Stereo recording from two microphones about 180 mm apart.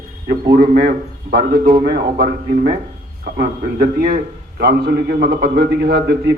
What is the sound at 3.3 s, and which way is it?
A man's voice, 50° right (ahead or behind).